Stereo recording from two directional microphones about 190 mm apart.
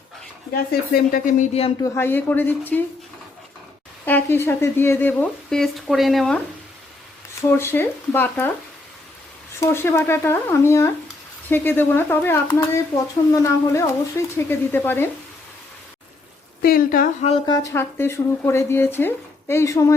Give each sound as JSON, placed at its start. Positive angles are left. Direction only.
{"t": 0.5, "sound": "speech", "side_deg": 55}
{"t": 1.8, "sound": "speech", "side_deg": 10}
{"t": 4.0, "sound": "speech", "side_deg": 10}
{"t": 7.6, "sound": "speech", "side_deg": 10}
{"t": 9.6, "sound": "speech", "side_deg": 15}
{"t": 16.6, "sound": "speech", "side_deg": 50}
{"t": 17.2, "sound": "speech", "side_deg": 25}